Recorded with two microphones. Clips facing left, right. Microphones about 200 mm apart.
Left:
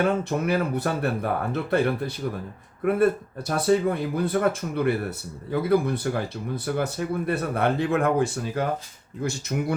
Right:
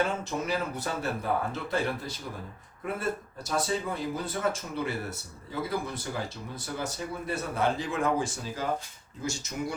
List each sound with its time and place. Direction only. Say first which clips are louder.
0.0 s speech: left 6 dB; 60° left (ahead or behind)